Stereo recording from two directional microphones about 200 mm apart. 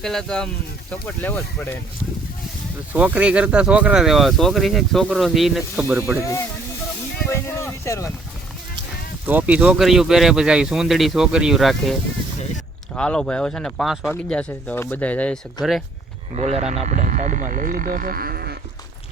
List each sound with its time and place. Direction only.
0.0 s speech: centre (ahead or behind)
2.9 s speech: 5° right (ahead or behind)
7.3 s a sound: 15° left (ahead or behind)
9.2 s speech: 10° right (ahead or behind)
15.6 s speech: 20° left (ahead or behind)
16.3 s speech: 30° right (ahead or behind); by 18.5 s 50° right (ahead or behind)